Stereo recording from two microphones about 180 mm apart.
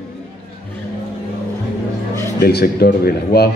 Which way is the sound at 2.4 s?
60° left (ahead or behind).